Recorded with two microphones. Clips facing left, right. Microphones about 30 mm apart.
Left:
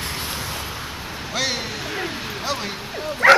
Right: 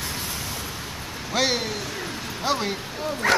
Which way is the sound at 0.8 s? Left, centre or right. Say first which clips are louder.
Left 3 dB; centre.